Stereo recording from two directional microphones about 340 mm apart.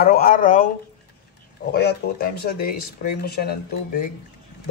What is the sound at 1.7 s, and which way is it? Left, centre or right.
Speech, left.